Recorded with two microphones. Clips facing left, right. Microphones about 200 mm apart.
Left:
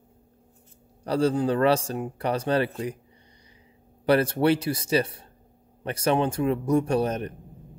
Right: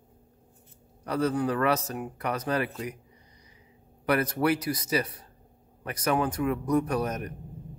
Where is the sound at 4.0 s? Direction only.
30° left (ahead or behind).